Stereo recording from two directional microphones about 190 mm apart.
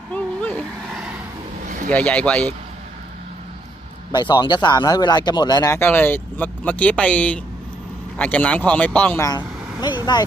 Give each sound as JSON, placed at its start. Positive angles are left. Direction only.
{"t": 0.1, "sound": "vehicle", "side_deg": 5}
{"t": 1.9, "sound": "speech", "side_deg": 5}
{"t": 4.1, "sound": "speech", "side_deg": 25}